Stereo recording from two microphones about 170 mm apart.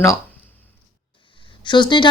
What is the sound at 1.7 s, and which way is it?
Speech, 25° left (ahead or behind).